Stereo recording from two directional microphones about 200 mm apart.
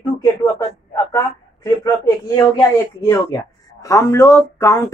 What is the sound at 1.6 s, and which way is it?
Speech, 15° left (ahead or behind).